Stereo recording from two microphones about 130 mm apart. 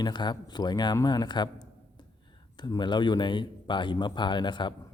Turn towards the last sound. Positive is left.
turn(degrees=35)  # may be behind; listen again after turning